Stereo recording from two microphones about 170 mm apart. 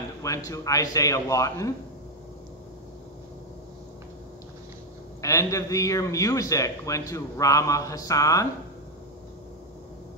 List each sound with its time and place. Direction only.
0.2 s a man's voice: 20° left (ahead or behind)
5.2 s a man's voice: 20° left (ahead or behind)